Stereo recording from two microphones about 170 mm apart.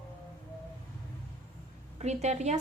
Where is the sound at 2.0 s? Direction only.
40° right (ahead or behind).